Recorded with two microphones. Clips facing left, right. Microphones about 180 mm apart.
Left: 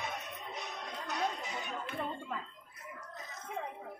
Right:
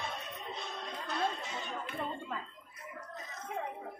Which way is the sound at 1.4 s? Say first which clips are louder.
Even; 15° left (ahead or behind).